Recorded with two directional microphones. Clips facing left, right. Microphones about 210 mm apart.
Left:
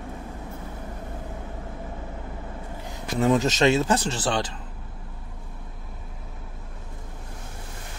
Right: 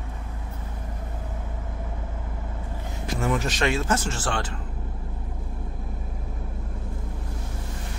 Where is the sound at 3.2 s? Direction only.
20° left (ahead or behind).